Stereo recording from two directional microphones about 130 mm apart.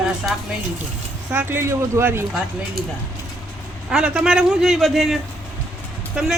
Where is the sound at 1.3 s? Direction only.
15° right (ahead or behind).